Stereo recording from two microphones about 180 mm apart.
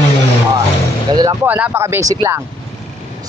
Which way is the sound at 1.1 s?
20° right (ahead or behind).